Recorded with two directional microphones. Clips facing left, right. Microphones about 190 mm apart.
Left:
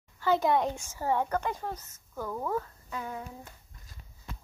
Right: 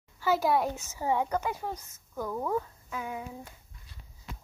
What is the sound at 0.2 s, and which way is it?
Speech, 5° right (ahead or behind).